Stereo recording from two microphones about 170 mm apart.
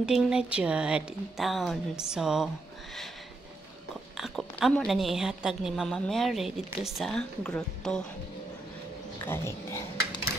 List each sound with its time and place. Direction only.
0.0 s a woman's voice: 5° right (ahead or behind)
4.2 s a woman's voice: centre (ahead or behind)
9.2 s speech: 15° left (ahead or behind)